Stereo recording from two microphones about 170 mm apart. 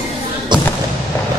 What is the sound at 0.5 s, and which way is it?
Thump, 25° right (ahead or behind).